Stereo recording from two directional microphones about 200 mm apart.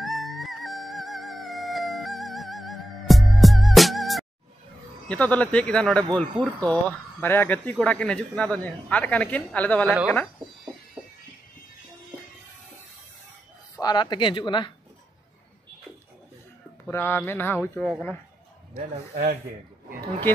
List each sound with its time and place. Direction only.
0.0 s music: centre (ahead or behind)
5.0 s a woman's voice: 5° left (ahead or behind)
13.7 s speech: 20° left (ahead or behind)
16.8 s a woman's voice: 10° left (ahead or behind)